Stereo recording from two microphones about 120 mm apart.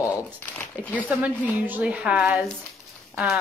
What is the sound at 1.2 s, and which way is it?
A woman's voice, 15° right (ahead or behind).